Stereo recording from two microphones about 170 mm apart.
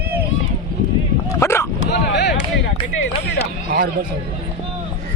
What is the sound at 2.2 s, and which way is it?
Speech, 90° left.